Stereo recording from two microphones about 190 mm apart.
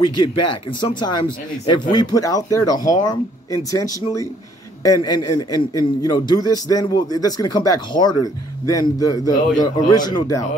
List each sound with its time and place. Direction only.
0.0 s a man's voice: 25° left (ahead or behind)
4.8 s a man's voice: 20° left (ahead or behind)